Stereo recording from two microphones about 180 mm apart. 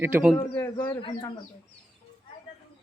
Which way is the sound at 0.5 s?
10° left (ahead or behind).